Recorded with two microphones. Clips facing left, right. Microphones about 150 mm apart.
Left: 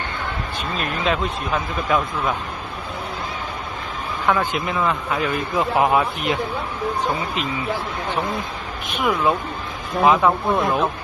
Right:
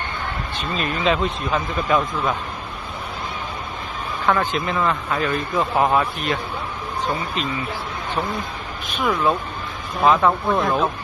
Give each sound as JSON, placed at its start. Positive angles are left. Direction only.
{"t": 0.7, "sound": "speech", "side_deg": 0}
{"t": 4.3, "sound": "a man's voice", "side_deg": 10}
{"t": 8.8, "sound": "a man's voice", "side_deg": 15}